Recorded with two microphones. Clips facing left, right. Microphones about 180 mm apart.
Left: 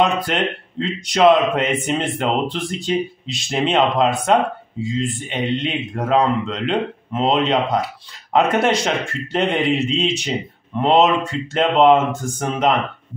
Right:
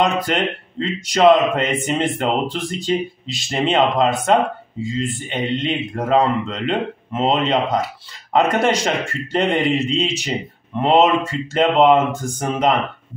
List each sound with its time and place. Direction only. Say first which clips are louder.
0.0 s a man's voice: even; centre (ahead or behind)